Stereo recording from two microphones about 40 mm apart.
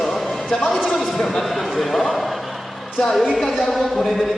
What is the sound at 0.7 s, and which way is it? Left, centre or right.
A man's voice, centre.